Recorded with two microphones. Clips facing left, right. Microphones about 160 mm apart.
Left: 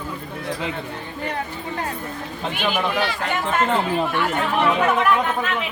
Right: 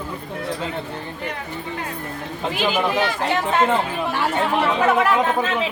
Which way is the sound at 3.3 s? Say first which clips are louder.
Right 2 dB; 25° right (ahead or behind).